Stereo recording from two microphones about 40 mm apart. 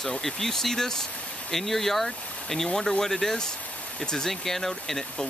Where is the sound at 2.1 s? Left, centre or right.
Left.